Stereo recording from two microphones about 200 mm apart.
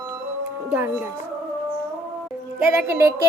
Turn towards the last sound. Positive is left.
turn(degrees=-15)  # may be behind; listen again after turning